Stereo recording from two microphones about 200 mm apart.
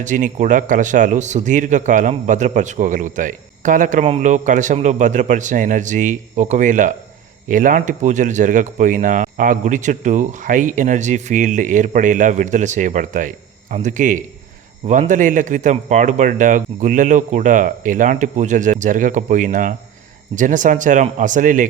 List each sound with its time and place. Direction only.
0.0 s a man's voice: 40° right (ahead or behind)